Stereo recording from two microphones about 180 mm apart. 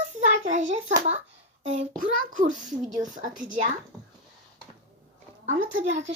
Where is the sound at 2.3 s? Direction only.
45° right (ahead or behind).